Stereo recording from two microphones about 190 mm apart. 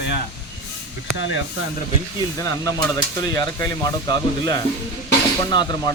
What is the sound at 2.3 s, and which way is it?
Speech, 20° left (ahead or behind).